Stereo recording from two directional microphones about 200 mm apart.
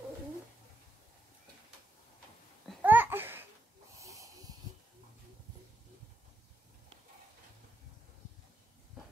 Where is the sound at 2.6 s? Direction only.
5° right (ahead or behind).